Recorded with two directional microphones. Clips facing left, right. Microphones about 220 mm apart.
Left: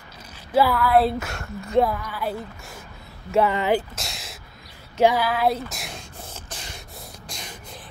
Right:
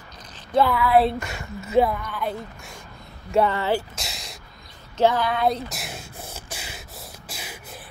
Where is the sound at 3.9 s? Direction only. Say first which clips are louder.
Left 1 dB; centre (ahead or behind).